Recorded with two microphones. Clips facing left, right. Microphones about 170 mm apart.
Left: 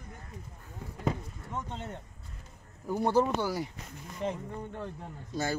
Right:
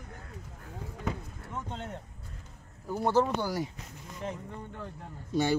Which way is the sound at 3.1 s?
10° left (ahead or behind).